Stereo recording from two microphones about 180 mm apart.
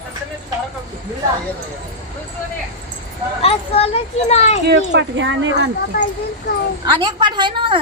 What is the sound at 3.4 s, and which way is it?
Speech, 35° left (ahead or behind).